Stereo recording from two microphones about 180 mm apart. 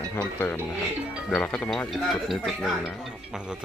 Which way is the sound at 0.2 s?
10° left (ahead or behind).